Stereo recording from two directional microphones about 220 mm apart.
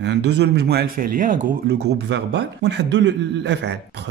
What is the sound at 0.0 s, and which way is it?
Speech, 50° right (ahead or behind).